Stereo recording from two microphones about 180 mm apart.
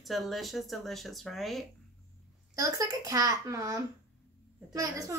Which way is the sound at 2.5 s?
20° right (ahead or behind).